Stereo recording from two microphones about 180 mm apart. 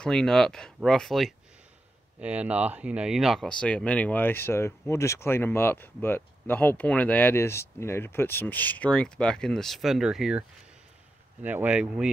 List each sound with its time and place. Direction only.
0.0 s speech: 5° left (ahead or behind)
11.4 s speech: 10° right (ahead or behind)